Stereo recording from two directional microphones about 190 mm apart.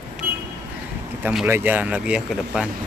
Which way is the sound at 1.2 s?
10° right (ahead or behind).